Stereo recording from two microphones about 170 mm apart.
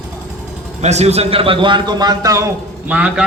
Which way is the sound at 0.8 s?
40° right (ahead or behind).